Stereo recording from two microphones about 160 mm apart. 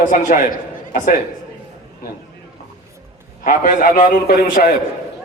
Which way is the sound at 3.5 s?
60° left (ahead or behind).